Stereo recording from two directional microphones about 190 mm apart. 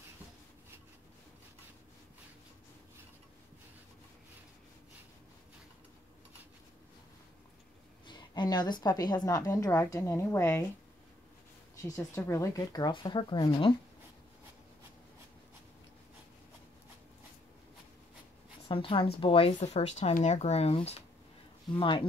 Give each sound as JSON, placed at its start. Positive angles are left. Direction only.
{"t": 8.1, "sound": "a woman's voice", "side_deg": 25}
{"t": 11.7, "sound": "a woman's voice", "side_deg": 15}
{"t": 18.7, "sound": "a woman's voice", "side_deg": 25}